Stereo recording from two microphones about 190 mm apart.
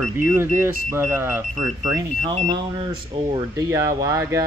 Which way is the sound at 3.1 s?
20° right (ahead or behind).